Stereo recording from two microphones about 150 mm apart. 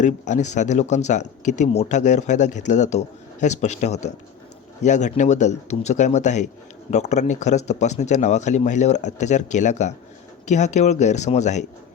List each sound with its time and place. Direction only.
0.0 s speech: 55° left (ahead or behind)